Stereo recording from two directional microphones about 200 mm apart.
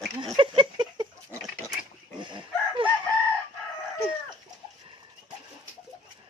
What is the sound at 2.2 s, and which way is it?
Chicken, 25° right (ahead or behind).